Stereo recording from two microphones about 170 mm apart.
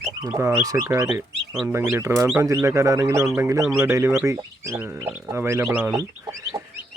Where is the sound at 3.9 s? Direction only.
15° right (ahead or behind).